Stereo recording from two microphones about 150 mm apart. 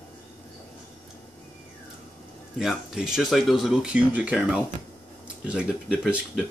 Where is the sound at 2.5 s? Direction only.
Centre (ahead or behind).